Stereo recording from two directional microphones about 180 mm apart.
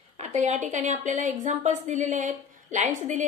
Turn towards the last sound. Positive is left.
turn(degrees=-40)  # may be behind; listen again after turning